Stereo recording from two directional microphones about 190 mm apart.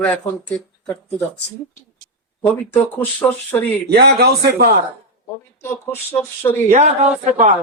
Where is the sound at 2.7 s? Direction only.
10° left (ahead or behind).